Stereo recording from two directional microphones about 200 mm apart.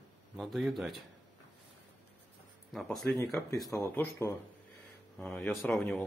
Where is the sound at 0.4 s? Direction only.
Centre (ahead or behind).